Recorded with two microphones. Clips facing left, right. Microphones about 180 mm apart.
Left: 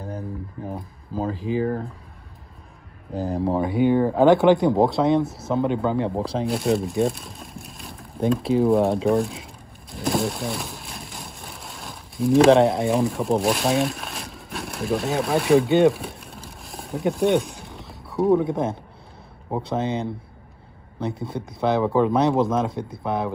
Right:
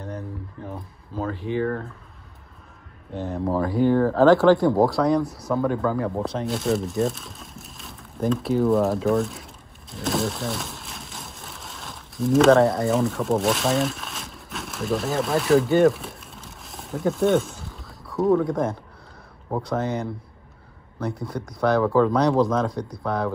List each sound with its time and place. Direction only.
0.7 s a sound: 35° left (ahead or behind)
3.1 s speech: 35° left (ahead or behind)
3.7 s speech: centre (ahead or behind)
4.0 s speech: 15° left (ahead or behind); by 6.4 s 30° left (ahead or behind)
6.7 s a sound: centre (ahead or behind)
8.5 s speech: centre (ahead or behind)
9.8 s pigeon: centre (ahead or behind)
12.8 s speech: centre (ahead or behind)
14.2 s a sound: centre (ahead or behind)
15.1 s vehicle: centre (ahead or behind)
18.3 s speech: 25° left (ahead or behind)